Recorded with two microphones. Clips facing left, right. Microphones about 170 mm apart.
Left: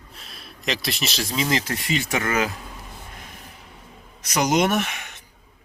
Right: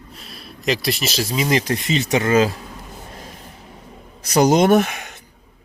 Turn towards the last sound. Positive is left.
turn(degrees=-40)  # may be behind; listen again after turning